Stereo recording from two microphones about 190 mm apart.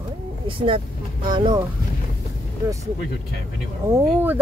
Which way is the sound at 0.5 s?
25° right (ahead or behind).